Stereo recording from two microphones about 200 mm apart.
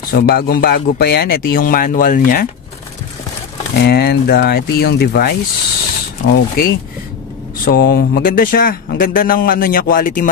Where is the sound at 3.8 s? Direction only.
50° left (ahead or behind).